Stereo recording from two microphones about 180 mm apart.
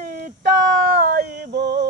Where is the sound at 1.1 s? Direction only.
60° right (ahead or behind).